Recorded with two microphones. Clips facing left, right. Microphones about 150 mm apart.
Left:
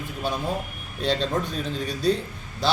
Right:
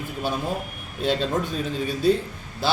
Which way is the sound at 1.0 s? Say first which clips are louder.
Right 1 dB; 5° right (ahead or behind).